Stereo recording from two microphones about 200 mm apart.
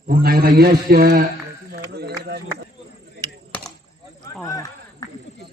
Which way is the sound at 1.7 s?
55° right (ahead or behind).